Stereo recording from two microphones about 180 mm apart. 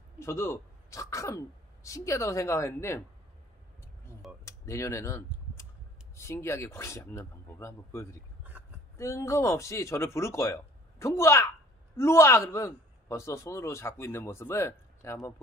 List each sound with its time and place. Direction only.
0.2 s a man's voice: 15° left (ahead or behind)
4.5 s a sound: 15° left (ahead or behind)
6.1 s a man's voice: 15° left (ahead or behind)